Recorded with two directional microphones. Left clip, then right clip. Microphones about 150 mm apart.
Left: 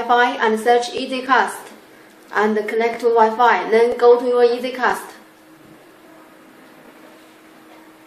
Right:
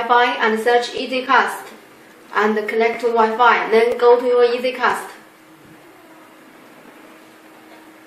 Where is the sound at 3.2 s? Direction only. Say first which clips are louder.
Right 1 dB; 40° left (ahead or behind).